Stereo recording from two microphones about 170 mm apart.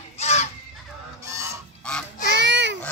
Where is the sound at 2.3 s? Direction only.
90° right.